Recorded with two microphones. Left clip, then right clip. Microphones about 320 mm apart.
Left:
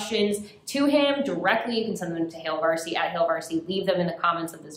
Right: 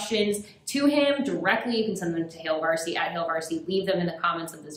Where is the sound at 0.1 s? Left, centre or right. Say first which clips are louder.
Left 1 dB; centre.